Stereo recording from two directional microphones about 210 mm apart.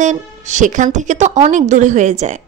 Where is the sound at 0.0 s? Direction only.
35° right (ahead or behind).